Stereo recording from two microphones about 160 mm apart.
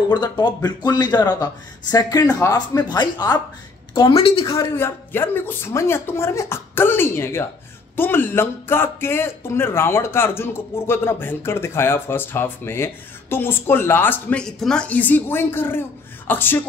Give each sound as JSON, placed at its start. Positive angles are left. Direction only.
{"t": 0.1, "sound": "speech", "side_deg": 30}
{"t": 4.5, "sound": "speech", "side_deg": 20}